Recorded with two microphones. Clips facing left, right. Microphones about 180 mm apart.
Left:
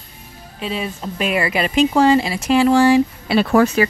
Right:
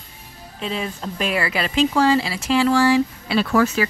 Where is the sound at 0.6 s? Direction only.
5° left (ahead or behind); by 3.4 s 20° left (ahead or behind).